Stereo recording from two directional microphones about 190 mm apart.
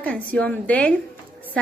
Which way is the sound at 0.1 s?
5° left (ahead or behind).